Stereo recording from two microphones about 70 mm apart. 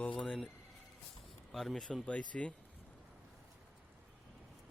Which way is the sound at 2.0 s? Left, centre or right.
Centre.